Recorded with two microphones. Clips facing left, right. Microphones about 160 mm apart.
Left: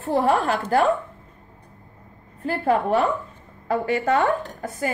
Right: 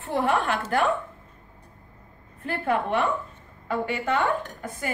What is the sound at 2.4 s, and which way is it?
Speech, 35° left (ahead or behind).